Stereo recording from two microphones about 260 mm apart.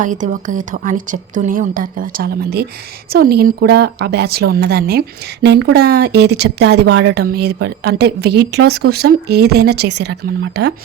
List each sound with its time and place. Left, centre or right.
0.0 s a woman's voice: right